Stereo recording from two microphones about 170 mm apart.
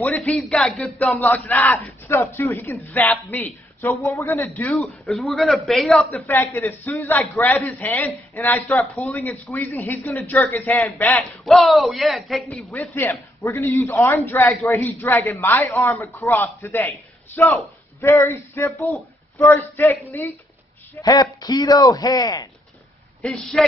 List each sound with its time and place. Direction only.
0.0 s a man's voice: 10° left (ahead or behind)
4.8 s a man's voice: centre (ahead or behind)
11.4 s a man's voice: centre (ahead or behind)
12.7 s a man's voice: 15° left (ahead or behind)
18.0 s a man's voice: 10° left (ahead or behind)
21.0 s speech: 25° left (ahead or behind)
23.2 s a man's voice: centre (ahead or behind)